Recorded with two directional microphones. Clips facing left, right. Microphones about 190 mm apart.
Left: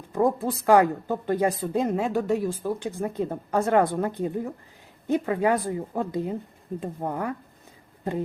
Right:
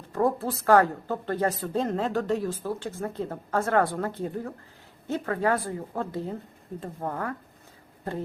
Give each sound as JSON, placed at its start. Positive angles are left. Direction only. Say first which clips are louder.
{"t": 0.1, "sound": "speech", "louder": "left 2 dB", "side_deg": 15}